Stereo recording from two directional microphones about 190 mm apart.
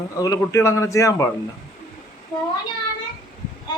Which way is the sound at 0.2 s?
20° left (ahead or behind).